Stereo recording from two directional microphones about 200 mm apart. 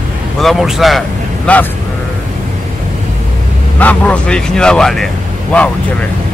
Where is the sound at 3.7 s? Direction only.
5° left (ahead or behind).